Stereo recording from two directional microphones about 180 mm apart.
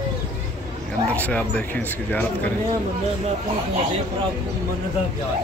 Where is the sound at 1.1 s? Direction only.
10° left (ahead or behind).